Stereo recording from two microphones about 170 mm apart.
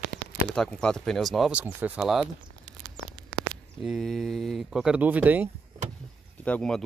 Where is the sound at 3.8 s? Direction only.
Centre (ahead or behind).